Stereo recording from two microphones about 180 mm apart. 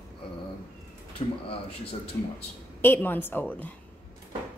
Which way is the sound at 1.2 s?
30° left (ahead or behind).